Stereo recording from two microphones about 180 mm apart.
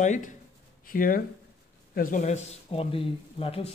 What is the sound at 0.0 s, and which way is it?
Speech, 45° left (ahead or behind).